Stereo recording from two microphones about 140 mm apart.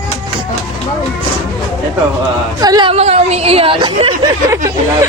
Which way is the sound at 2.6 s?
30° right (ahead or behind).